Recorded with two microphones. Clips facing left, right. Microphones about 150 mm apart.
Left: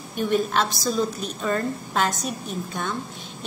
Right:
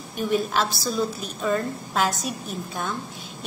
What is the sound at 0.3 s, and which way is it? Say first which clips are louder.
A woman's voice: left 1 dB; 5° right (ahead or behind).